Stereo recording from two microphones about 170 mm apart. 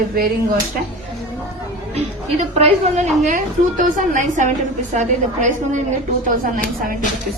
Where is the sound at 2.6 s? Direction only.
45° right (ahead or behind).